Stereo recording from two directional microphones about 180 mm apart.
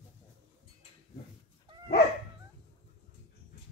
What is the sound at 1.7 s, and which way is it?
Dog, 25° right (ahead or behind).